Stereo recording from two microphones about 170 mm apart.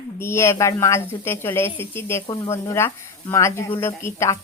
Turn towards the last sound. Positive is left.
turn(degrees=15)  # may be behind; listen again after turning